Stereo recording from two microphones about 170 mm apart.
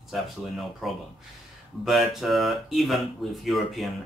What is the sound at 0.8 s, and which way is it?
Speech, centre (ahead or behind).